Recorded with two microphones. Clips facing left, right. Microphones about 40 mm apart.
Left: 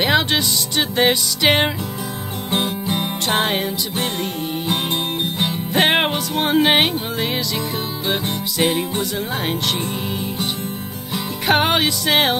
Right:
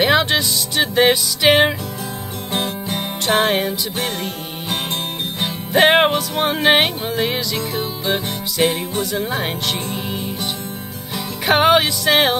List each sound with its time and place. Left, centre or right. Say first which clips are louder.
0.0 s music: right 2 dB; centre
5.4 s music: right 4 dB; centre
11.4 s music: right 3 dB; centre